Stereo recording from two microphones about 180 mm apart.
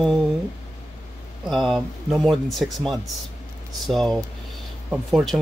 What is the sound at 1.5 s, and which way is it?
A man's voice, centre (ahead or behind).